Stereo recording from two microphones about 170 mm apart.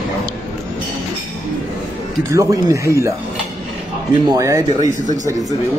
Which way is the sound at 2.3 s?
20° right (ahead or behind).